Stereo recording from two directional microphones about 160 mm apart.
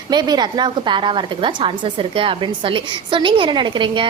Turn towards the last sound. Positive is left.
turn(degrees=-30)  # may be behind; listen again after turning